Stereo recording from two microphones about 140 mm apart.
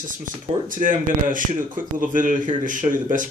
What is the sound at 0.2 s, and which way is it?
Speech, 75° right (ahead or behind).